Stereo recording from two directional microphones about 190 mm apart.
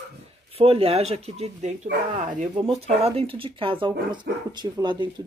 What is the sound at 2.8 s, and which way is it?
Speech, 30° right (ahead or behind).